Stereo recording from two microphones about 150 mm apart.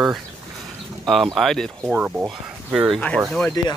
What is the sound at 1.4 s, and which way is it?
Speech, centre (ahead or behind).